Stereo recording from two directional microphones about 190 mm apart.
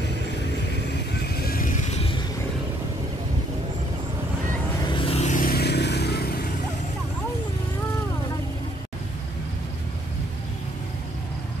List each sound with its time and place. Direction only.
1.5 s vehicle: 45° left (ahead or behind)
4.8 s vehicle: 25° left (ahead or behind); by 6.4 s 55° left (ahead or behind)